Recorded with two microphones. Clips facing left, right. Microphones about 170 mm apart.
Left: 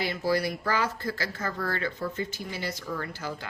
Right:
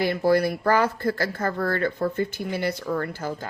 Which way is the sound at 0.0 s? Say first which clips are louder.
Right 7 dB; 55° right (ahead or behind).